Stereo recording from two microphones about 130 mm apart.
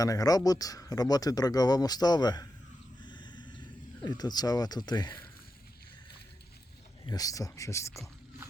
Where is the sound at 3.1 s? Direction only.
35° left (ahead or behind).